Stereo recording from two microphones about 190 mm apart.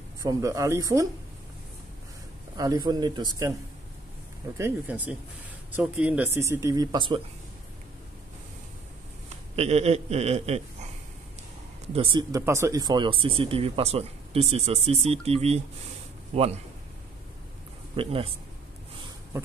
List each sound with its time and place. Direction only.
0.2 s speech: 20° right (ahead or behind)
2.5 s speech: 20° right (ahead or behind)
4.6 s speech: 10° right (ahead or behind)
9.6 s a man's voice: 35° right (ahead or behind)
11.9 s speech: 30° right (ahead or behind)
17.9 s speech: 30° right (ahead or behind)